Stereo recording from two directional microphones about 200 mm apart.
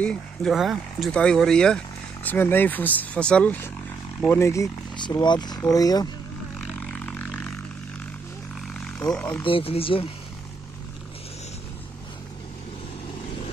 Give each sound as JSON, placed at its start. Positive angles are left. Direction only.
{"t": 0.0, "sound": "speech", "side_deg": 5}
{"t": 6.7, "sound": "vehicle", "side_deg": 5}
{"t": 8.7, "sound": "a sound", "side_deg": 5}
{"t": 9.4, "sound": "speech", "side_deg": 25}